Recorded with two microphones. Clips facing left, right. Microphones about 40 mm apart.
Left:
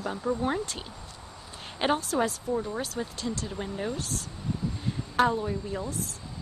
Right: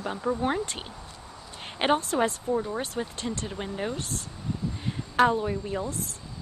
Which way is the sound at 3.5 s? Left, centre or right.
Right.